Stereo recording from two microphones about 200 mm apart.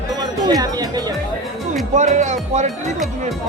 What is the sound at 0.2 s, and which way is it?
Speech, 20° right (ahead or behind).